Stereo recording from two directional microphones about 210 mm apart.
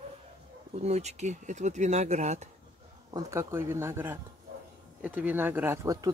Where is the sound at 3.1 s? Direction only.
15° right (ahead or behind).